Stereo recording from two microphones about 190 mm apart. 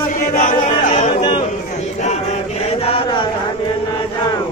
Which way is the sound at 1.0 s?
30° left (ahead or behind).